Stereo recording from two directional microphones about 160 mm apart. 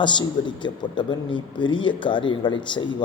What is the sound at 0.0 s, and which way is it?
A man's voice, 30° left (ahead or behind).